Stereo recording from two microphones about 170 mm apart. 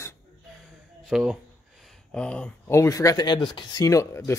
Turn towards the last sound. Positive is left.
turn(degrees=15)  # may be behind; listen again after turning